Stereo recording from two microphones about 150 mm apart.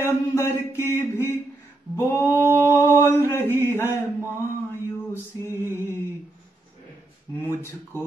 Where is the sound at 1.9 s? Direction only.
20° left (ahead or behind).